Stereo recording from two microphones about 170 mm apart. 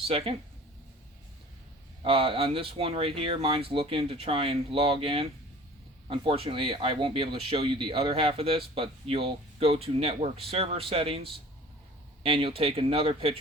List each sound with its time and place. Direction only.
0.1 s speech: 35° right (ahead or behind)
2.0 s speech: 35° right (ahead or behind)
12.2 s speech: 30° right (ahead or behind)